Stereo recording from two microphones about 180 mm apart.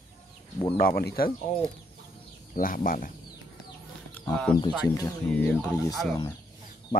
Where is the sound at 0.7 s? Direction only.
55° left (ahead or behind).